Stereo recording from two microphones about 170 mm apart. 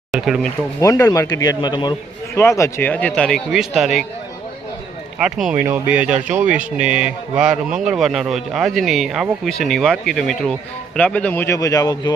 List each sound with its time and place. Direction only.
0.1 s speech: centre (ahead or behind)
0.8 s speech: 20° left (ahead or behind); by 4.0 s centre (ahead or behind)
5.2 s speech: centre (ahead or behind); by 12.1 s 20° left (ahead or behind)